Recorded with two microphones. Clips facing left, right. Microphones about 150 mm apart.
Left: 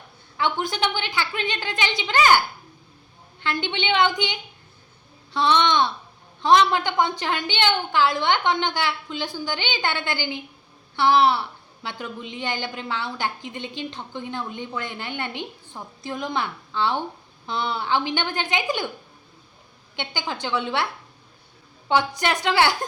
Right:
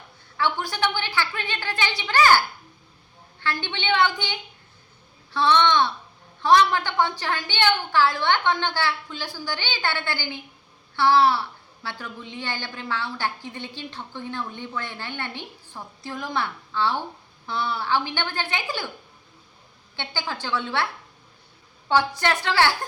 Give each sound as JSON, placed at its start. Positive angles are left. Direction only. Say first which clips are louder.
{"t": 0.3, "sound": "a woman's voice", "louder": "left 1 dB", "side_deg": 20}
{"t": 3.4, "sound": "a woman's voice", "louder": "left 2 dB", "side_deg": 20}
{"t": 20.0, "sound": "a woman's voice", "louder": "left 2 dB", "side_deg": 20}
{"t": 21.8, "sound": "a woman's voice", "louder": "even", "side_deg": 15}